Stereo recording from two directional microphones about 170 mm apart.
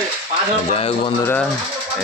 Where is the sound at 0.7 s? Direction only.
35° left (ahead or behind).